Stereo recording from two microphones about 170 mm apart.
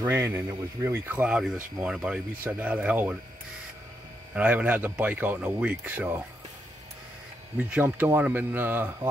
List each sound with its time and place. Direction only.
0.0 s speech: 15° right (ahead or behind)
4.4 s speech: 10° right (ahead or behind)
7.5 s speech: 10° right (ahead or behind)